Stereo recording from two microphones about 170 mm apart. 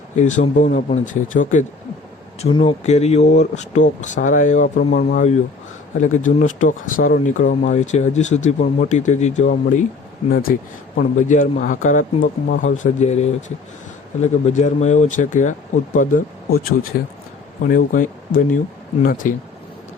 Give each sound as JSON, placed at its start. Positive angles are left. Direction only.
{"t": 0.2, "sound": "speech", "side_deg": 45}
{"t": 2.4, "sound": "speech", "side_deg": 30}
{"t": 10.3, "sound": "speech", "side_deg": 60}
{"t": 17.7, "sound": "speech", "side_deg": 50}